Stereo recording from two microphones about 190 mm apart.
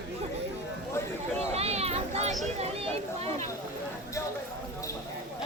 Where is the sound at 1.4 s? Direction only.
35° right (ahead or behind).